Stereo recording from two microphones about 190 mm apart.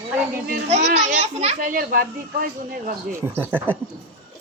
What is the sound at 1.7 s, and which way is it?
A man's voice, 50° right (ahead or behind).